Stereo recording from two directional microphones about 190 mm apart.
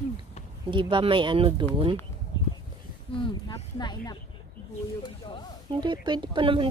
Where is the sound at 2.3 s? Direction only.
20° left (ahead or behind).